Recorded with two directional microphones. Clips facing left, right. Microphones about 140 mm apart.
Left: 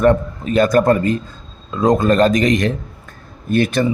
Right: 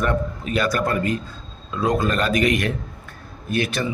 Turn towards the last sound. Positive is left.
turn(degrees=45)  # may be behind; listen again after turning